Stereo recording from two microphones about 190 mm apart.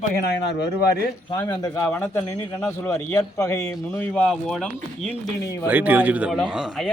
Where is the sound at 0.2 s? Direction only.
60° left (ahead or behind).